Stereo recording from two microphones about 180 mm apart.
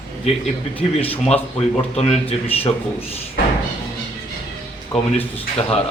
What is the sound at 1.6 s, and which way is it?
Speech, 35° left (ahead or behind).